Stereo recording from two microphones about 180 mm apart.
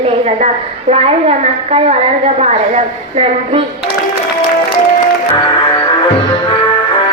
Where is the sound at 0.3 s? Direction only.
35° right (ahead or behind).